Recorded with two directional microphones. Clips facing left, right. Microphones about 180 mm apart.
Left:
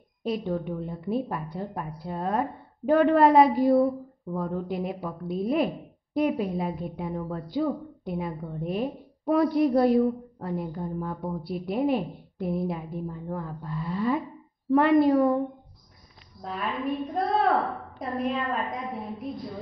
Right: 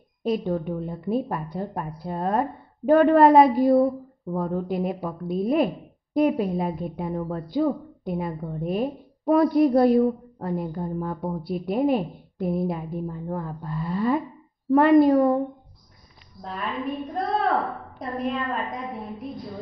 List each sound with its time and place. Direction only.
0.2 s a woman's voice: 45° right (ahead or behind)
16.4 s a woman's voice: centre (ahead or behind)